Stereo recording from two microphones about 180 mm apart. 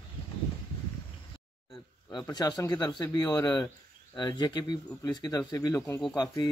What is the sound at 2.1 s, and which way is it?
Speech, 20° left (ahead or behind).